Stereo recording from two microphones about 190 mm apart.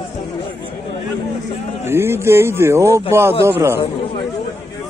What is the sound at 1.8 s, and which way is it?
Speech, 15° right (ahead or behind).